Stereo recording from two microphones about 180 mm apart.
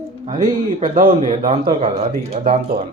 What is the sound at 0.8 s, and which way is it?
Speech, 45° right (ahead or behind).